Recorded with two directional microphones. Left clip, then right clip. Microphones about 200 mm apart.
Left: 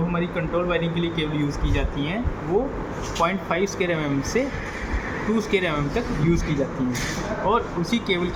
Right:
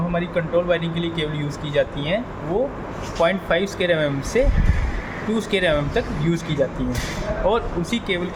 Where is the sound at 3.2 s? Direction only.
30° right (ahead or behind).